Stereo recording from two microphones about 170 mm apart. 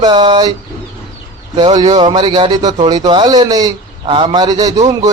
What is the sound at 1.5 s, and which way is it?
Speech, 25° right (ahead or behind).